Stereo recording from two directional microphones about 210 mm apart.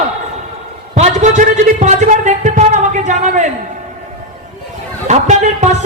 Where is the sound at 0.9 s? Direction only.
35° right (ahead or behind).